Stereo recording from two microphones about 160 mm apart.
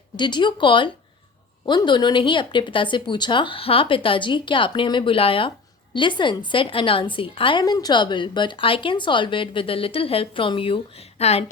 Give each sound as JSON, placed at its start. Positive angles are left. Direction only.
{"t": 0.2, "sound": "a woman's voice", "side_deg": 30}